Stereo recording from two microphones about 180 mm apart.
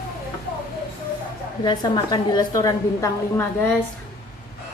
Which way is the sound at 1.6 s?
25° left (ahead or behind).